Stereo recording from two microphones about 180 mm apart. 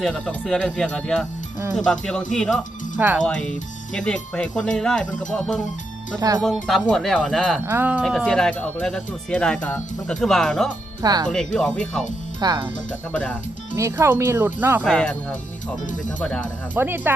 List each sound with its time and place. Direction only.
0.0 s speech: 5° left (ahead or behind)
6.1 s speech: 20° right (ahead or behind)
6.4 s speech: centre (ahead or behind)
7.6 s speech: 10° right (ahead or behind)
11.0 s speech: 20° right (ahead or behind)
11.3 s speech: 5° left (ahead or behind)
12.4 s speech: 20° right (ahead or behind)
13.7 s speech: 15° right (ahead or behind)
14.8 s speech: 5° left (ahead or behind)
16.7 s speech: 10° right (ahead or behind)